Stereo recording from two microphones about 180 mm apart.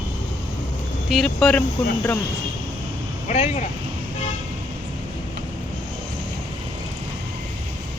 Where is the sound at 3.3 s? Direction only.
40° left (ahead or behind).